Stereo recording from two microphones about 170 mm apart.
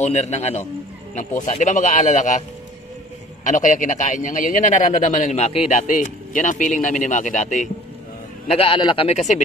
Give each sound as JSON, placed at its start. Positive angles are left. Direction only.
{"t": 0.0, "sound": "speech", "side_deg": 40}
{"t": 3.4, "sound": "speech", "side_deg": 50}
{"t": 8.5, "sound": "speech", "side_deg": 35}